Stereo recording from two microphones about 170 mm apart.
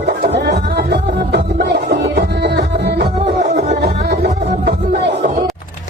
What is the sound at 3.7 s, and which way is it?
Music, 70° right (ahead or behind).